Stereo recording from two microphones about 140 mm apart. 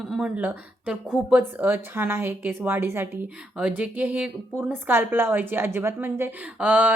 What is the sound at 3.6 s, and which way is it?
Speech, 5° right (ahead or behind).